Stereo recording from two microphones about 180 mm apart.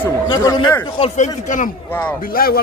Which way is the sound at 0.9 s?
35° left (ahead or behind).